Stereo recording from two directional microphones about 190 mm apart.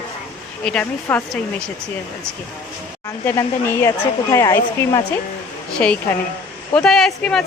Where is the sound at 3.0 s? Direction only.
15° left (ahead or behind).